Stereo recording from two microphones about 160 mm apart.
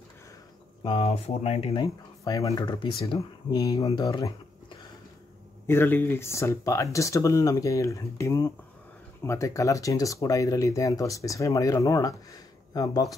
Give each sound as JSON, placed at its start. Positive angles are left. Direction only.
{"t": 0.8, "sound": "speech", "side_deg": 35}